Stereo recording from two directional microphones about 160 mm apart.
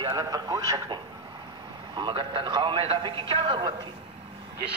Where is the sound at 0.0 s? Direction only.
20° right (ahead or behind).